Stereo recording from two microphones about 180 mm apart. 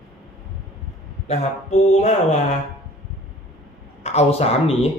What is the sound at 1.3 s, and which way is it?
Speech, 40° left (ahead or behind).